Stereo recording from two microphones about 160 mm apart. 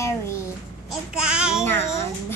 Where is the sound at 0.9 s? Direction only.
5° right (ahead or behind).